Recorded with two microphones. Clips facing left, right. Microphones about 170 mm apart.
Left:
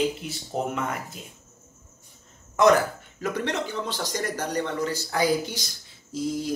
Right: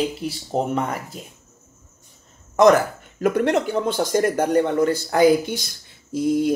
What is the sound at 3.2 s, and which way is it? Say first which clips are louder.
Speech: right 9 dB; 55° right (ahead or behind).